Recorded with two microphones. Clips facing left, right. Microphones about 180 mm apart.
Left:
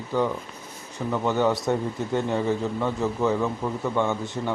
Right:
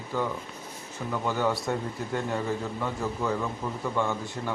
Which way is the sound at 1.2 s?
20° left (ahead or behind).